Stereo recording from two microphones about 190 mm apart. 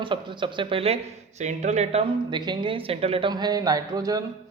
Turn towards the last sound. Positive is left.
turn(degrees=-20)  # may be behind; listen again after turning